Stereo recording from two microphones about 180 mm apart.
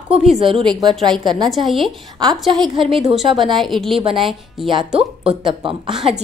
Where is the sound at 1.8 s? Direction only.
Centre (ahead or behind).